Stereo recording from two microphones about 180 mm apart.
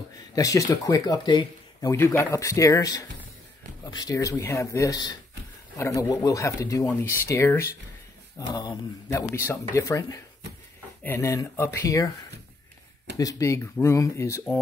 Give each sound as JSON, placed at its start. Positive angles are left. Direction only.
{"t": 0.4, "sound": "speech", "side_deg": 20}
{"t": 13.2, "sound": "speech", "side_deg": 15}